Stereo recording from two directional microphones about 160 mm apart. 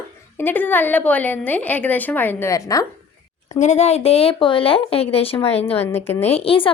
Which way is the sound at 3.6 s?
45° left (ahead or behind).